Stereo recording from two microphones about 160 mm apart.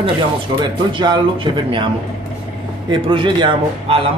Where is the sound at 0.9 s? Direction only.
30° right (ahead or behind).